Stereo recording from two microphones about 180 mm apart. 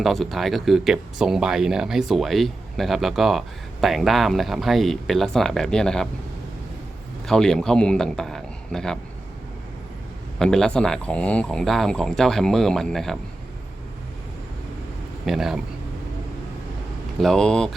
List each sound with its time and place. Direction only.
0.0 s speech: centre (ahead or behind)
7.3 s a man's voice: 5° left (ahead or behind)
10.3 s speech: 5° left (ahead or behind)
15.3 s speech: centre (ahead or behind)
17.2 s speech: centre (ahead or behind)